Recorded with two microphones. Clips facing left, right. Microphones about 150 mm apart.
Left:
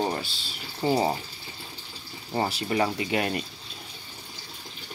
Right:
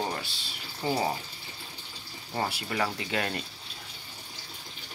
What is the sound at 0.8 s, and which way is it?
Speech, 25° left (ahead or behind).